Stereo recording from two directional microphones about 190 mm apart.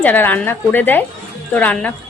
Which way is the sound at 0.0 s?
10° left (ahead or behind).